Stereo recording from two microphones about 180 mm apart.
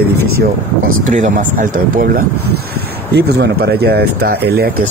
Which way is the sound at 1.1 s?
45° right (ahead or behind).